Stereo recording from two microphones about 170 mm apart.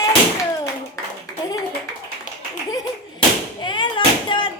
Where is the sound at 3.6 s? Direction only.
25° left (ahead or behind).